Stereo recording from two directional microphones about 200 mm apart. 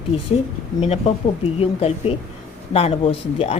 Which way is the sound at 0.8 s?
30° left (ahead or behind).